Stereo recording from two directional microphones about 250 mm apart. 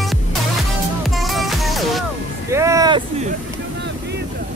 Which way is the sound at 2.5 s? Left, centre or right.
Centre.